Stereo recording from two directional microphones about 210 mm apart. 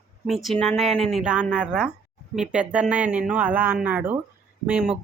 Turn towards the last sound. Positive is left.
turn(degrees=-5)  # may be behind; listen again after turning